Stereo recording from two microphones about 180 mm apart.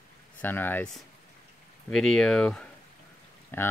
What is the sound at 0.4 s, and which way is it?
Speech, 10° left (ahead or behind).